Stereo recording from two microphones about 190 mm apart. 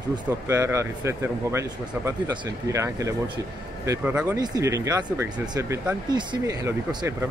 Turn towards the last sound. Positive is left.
turn(degrees=-20)  # may be behind; listen again after turning